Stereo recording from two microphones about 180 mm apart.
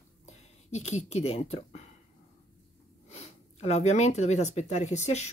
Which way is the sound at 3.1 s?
35° left (ahead or behind).